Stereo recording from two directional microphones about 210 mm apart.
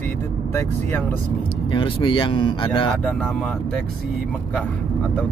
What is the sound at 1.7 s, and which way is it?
Speech, 25° left (ahead or behind).